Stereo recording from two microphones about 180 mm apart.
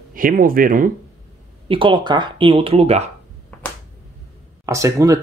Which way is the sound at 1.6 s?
30° right (ahead or behind).